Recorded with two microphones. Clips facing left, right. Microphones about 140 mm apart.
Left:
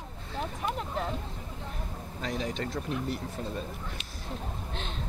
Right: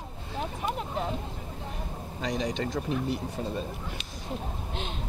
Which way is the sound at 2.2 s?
Centre (ahead or behind).